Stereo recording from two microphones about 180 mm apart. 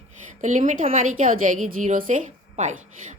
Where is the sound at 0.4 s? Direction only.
45° right (ahead or behind).